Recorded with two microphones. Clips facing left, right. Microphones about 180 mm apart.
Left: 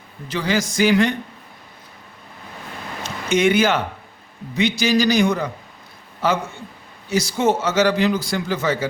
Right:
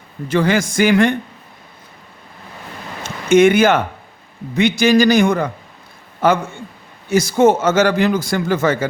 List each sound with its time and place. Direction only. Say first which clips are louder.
0.3 s speech: right 6 dB; 55° right (ahead or behind)
3.0 s a sound: right 7 dB; 50° right (ahead or behind)
4.5 s speech: right 5 dB; 50° right (ahead or behind)